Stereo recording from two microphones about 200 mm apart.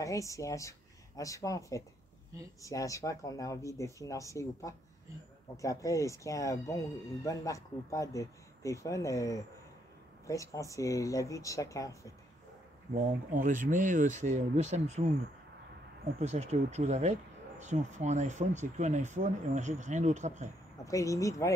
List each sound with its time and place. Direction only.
0.0 s speech: 15° left (ahead or behind)
12.9 s speech: 40° right (ahead or behind)
16.2 s speech: 35° right (ahead or behind)
20.8 s speech: 15° left (ahead or behind)